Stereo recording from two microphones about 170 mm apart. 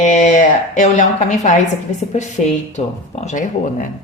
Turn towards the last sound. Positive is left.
turn(degrees=50)  # may be behind; listen again after turning